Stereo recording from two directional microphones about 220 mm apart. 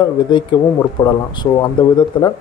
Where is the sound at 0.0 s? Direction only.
20° left (ahead or behind).